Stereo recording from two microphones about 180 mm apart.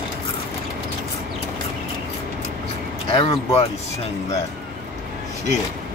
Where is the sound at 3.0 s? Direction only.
30° left (ahead or behind).